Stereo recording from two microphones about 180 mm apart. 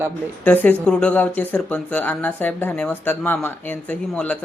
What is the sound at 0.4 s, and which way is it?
Speech, 10° left (ahead or behind).